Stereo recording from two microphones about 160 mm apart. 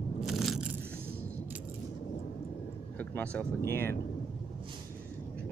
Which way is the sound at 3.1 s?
10° left (ahead or behind).